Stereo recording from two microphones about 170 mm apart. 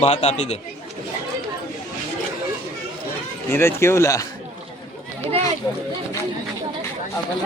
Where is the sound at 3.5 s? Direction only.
15° left (ahead or behind).